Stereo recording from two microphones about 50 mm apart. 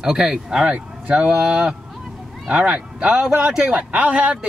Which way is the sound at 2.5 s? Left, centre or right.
Right.